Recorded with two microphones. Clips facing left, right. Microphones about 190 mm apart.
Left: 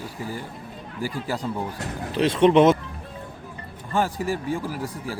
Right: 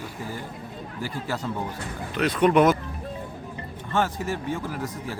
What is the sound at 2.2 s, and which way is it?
Speech, 25° left (ahead or behind).